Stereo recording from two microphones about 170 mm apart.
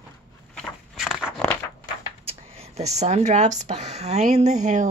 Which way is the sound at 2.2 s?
35° right (ahead or behind).